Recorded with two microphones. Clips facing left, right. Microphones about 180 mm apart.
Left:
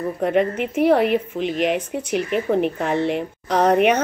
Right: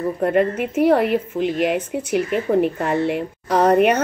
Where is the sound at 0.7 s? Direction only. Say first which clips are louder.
Even; 5° right (ahead or behind).